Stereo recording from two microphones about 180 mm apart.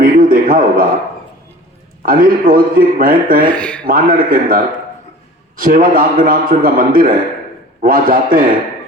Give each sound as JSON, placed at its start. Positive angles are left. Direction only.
{"t": 0.0, "sound": "a sound", "side_deg": -50}
{"t": 2.0, "sound": "a man's voice", "side_deg": -50}
{"t": 3.5, "sound": "speech", "side_deg": 5}
{"t": 3.8, "sound": "a man's voice", "side_deg": -50}